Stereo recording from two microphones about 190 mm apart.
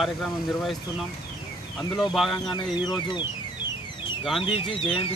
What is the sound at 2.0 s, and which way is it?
Speech, centre (ahead or behind).